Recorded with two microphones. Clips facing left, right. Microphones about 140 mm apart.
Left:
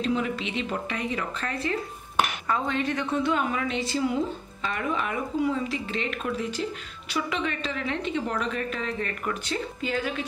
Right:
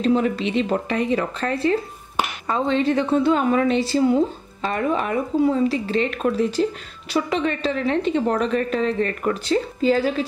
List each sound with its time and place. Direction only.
0.0 s a woman's voice: 35° right (ahead or behind)